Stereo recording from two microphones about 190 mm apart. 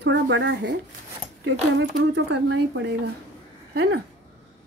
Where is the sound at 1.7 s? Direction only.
70° right (ahead or behind).